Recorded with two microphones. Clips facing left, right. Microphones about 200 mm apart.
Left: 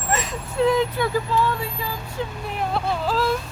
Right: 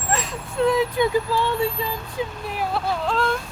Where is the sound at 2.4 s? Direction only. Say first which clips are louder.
Left 1 dB; 5° right (ahead or behind).